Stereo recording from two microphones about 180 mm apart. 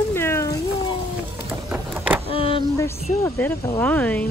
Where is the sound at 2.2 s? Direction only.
30° left (ahead or behind).